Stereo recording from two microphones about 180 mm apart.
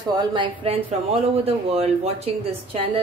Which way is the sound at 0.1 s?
25° right (ahead or behind).